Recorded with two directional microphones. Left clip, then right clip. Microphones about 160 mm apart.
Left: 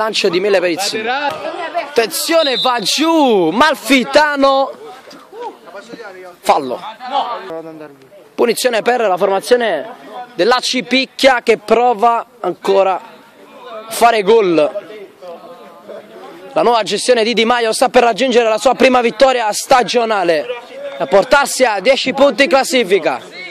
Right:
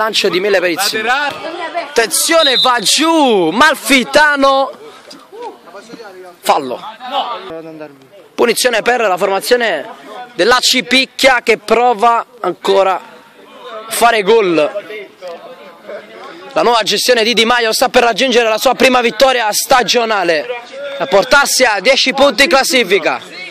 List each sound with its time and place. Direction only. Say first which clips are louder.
0.0 s a man's voice: right 1 dB; 10° left (ahead or behind)
0.9 s a man's voice: right 3 dB; 30° right (ahead or behind)
1.6 s a sound: right 1 dB; 30° left (ahead or behind)
2.0 s a man's voice: right 2 dB; 5° left (ahead or behind)
6.4 s a man's voice: even; 10° left (ahead or behind)
8.4 s a man's voice: right 2 dB; 5° left (ahead or behind)
10.3 s a man's voice: right 3 dB; 10° left (ahead or behind)
16.5 s a man's voice: right 1 dB; 10° left (ahead or behind)